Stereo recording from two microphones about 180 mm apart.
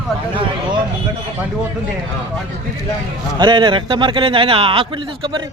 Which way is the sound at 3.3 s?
25° right (ahead or behind).